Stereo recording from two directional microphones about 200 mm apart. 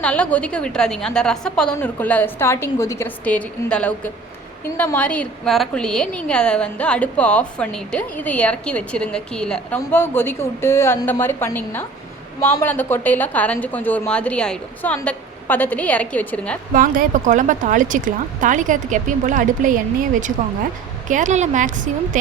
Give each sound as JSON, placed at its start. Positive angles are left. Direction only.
{"t": 0.0, "sound": "a woman's voice", "side_deg": 5}
{"t": 16.7, "sound": "speech", "side_deg": -45}
{"t": 21.1, "sound": "speech", "side_deg": -40}